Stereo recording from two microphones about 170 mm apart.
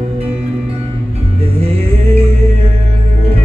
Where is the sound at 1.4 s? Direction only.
35° right (ahead or behind).